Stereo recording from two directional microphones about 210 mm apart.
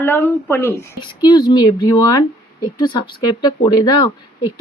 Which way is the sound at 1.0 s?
20° left (ahead or behind).